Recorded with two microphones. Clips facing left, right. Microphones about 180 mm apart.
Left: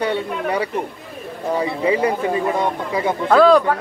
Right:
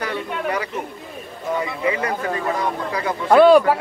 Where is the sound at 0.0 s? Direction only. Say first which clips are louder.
Left 4 dB; 30° left (ahead or behind).